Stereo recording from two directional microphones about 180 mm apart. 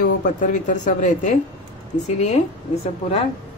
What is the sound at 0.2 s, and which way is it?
A woman's voice, 45° left (ahead or behind).